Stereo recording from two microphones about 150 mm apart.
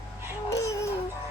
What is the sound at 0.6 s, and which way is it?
Music, 20° left (ahead or behind).